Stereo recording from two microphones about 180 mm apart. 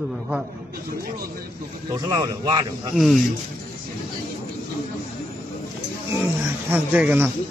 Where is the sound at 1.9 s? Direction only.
20° right (ahead or behind).